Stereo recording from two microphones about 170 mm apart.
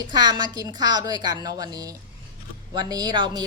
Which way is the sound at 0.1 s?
25° right (ahead or behind).